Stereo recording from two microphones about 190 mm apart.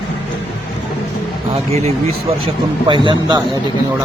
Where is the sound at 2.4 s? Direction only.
25° right (ahead or behind).